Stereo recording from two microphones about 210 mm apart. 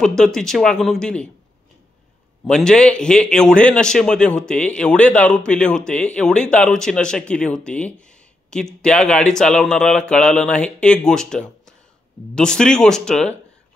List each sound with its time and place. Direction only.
0.0 s a man's voice: centre (ahead or behind)
2.4 s a man's voice: 5° left (ahead or behind)